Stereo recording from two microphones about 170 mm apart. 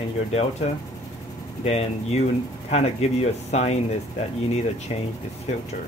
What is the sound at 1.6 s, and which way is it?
Speech, 40° left (ahead or behind).